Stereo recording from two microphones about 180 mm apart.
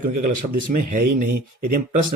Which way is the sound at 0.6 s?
50° right (ahead or behind).